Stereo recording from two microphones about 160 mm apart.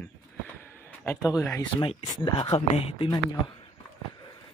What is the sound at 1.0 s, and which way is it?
Speech, 20° left (ahead or behind).